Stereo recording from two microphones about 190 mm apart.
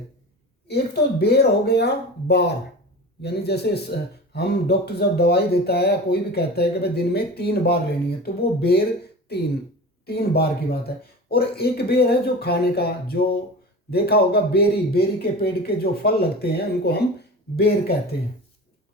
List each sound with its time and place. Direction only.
0.7 s speech: 60° left (ahead or behind)